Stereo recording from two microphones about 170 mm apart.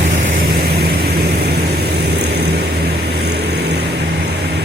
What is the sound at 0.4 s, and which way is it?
Vehicle, 65° right (ahead or behind).